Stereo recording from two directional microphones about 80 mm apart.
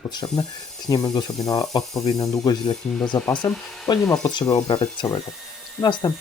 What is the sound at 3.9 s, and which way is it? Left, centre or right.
Speech, left.